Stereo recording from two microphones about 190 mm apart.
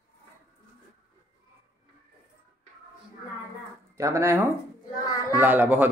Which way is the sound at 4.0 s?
15° right (ahead or behind).